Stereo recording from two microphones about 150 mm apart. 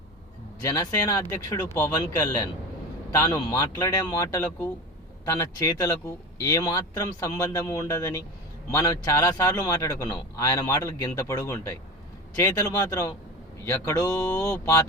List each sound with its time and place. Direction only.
0.6 s a man's voice: 25° left (ahead or behind)